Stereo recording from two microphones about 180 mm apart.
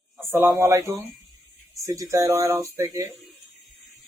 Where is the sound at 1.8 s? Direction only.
20° right (ahead or behind).